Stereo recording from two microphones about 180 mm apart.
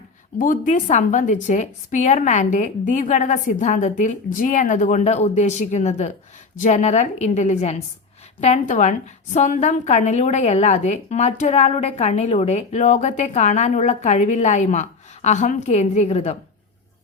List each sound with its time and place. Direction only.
0.3 s a woman's voice: 50° left (ahead or behind)